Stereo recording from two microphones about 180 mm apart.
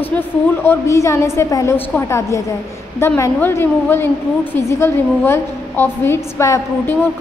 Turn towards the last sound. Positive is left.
turn(degrees=15)  # may be behind; listen again after turning